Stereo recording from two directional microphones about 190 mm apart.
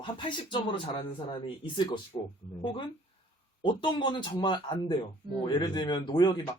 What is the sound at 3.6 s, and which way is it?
Speech, 25° left (ahead or behind).